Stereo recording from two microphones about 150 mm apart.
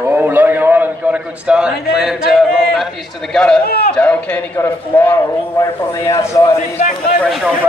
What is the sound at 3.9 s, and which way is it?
A man's voice, 10° left (ahead or behind).